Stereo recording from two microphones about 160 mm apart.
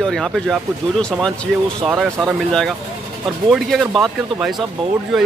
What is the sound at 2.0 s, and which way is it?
Speech, 5° left (ahead or behind).